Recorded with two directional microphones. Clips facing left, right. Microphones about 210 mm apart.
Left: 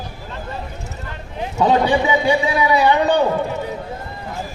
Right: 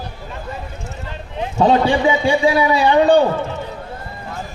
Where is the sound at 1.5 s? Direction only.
25° right (ahead or behind).